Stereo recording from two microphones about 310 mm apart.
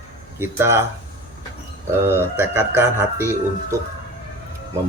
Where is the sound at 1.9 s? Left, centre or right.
Centre.